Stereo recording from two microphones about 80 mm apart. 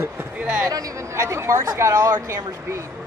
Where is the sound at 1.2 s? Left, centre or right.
Right.